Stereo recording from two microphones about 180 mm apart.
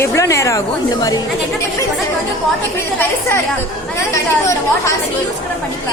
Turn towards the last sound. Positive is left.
turn(degrees=15)  # may be behind; listen again after turning